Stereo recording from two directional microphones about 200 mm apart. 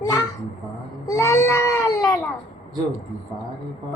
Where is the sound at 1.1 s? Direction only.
15° left (ahead or behind).